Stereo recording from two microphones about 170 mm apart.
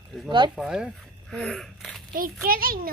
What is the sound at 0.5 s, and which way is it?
Speech, 5° right (ahead or behind).